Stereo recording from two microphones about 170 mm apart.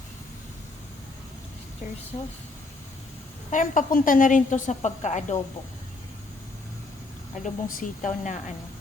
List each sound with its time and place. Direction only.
3.5 s a woman's voice: 50° left (ahead or behind)
7.4 s a woman's voice: 50° left (ahead or behind)